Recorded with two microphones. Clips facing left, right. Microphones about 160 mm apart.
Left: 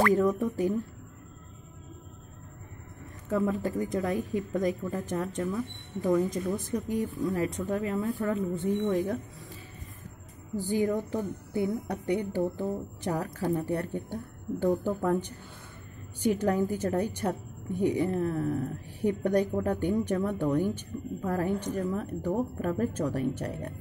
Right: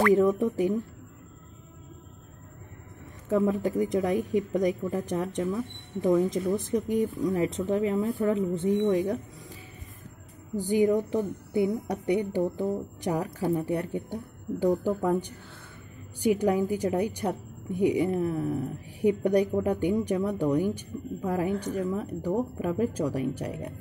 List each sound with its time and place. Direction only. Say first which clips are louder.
0.1 s speech: right 3 dB; 20° right (ahead or behind)
3.3 s speech: right 3 dB; 20° right (ahead or behind)
10.5 s a woman's voice: right 4 dB; 15° right (ahead or behind)